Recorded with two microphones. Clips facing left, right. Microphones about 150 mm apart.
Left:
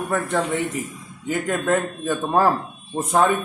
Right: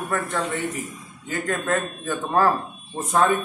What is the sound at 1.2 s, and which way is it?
A man's voice, 15° left (ahead or behind).